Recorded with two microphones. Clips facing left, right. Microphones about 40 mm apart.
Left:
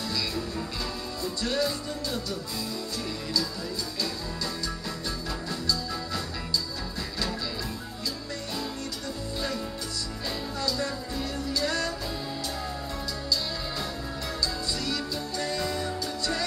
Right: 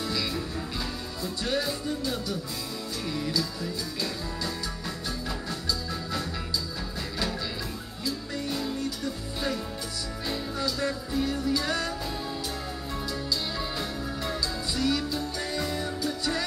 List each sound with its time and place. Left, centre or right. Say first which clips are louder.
1.2 s music: left 1 dB; centre
3.3 s music: even; centre
10.2 s music: right 1 dB; centre
13.3 s music: left 3 dB; centre